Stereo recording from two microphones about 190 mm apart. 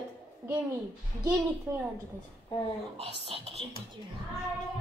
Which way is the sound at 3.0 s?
30° right (ahead or behind).